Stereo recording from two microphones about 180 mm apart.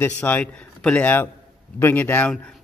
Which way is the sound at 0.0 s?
10° left (ahead or behind).